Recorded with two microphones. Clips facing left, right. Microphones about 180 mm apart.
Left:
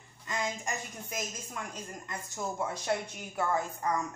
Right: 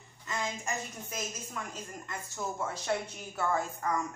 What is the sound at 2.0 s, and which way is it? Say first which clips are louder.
A woman's voice: left 1 dB; 15° left (ahead or behind).